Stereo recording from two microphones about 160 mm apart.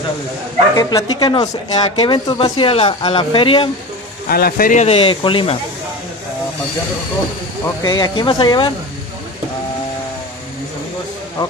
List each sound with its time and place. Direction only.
0.7 s speech: 25° left (ahead or behind)
4.3 s speech: 70° left (ahead or behind); by 5.6 s 30° left (ahead or behind)
7.8 s speech: 25° left (ahead or behind)